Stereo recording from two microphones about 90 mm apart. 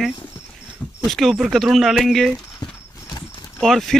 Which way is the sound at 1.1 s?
Centre (ahead or behind).